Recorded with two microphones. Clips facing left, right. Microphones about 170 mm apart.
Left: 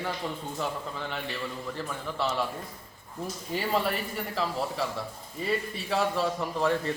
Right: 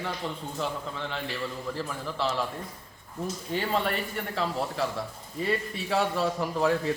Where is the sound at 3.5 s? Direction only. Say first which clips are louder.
Even; 5° left (ahead or behind).